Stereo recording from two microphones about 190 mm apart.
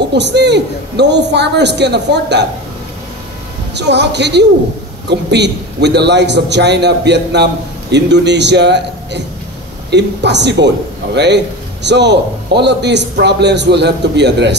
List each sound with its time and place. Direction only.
0.1 s a man's voice: 65° right (ahead or behind)
3.7 s a man's voice: 65° right (ahead or behind)